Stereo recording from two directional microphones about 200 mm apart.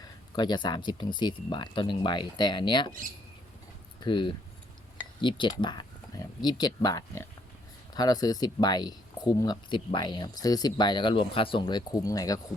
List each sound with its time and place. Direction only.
0.3 s speech: 20° left (ahead or behind)
4.0 s speech: 25° left (ahead or behind)